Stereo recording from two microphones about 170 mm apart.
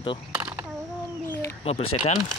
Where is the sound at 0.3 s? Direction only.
10° right (ahead or behind).